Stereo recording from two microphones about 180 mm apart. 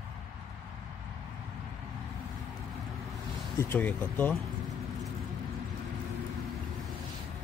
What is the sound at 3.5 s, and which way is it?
Speech, 10° left (ahead or behind).